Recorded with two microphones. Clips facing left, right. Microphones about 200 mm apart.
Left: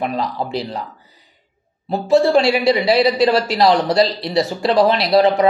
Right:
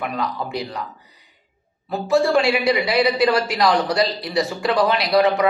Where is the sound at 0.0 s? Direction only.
30° left (ahead or behind).